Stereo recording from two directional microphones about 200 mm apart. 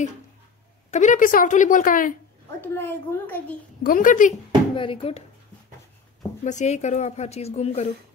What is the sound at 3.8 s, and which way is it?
Speech, 45° left (ahead or behind).